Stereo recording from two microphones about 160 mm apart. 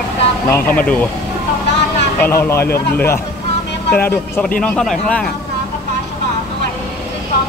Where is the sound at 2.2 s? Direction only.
15° left (ahead or behind).